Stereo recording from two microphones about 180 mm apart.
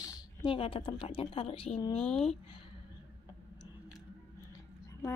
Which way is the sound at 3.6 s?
25° left (ahead or behind).